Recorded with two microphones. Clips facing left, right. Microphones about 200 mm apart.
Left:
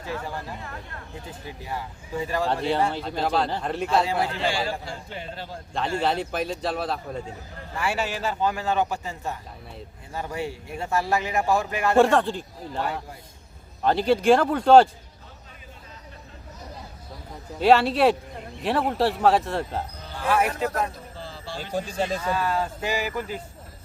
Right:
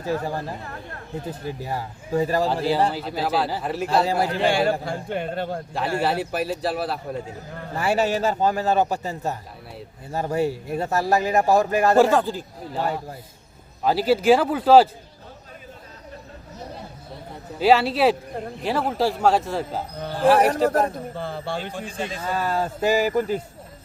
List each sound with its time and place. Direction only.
0.0 s speech: 40° right (ahead or behind)
2.5 s speech: centre (ahead or behind)
4.0 s speech: 40° right (ahead or behind)
4.4 s speech: 55° right (ahead or behind)
6.0 s speech: 10° right (ahead or behind)
7.7 s speech: 40° right (ahead or behind)
11.9 s speech: centre (ahead or behind)
13.8 s speech: 5° right (ahead or behind)
17.6 s speech: centre (ahead or behind)
20.1 s speech: 35° right (ahead or behind)
20.8 s a sound: 55° right (ahead or behind)
21.6 s a man's voice: 40° left (ahead or behind)
22.3 s speech: 40° right (ahead or behind)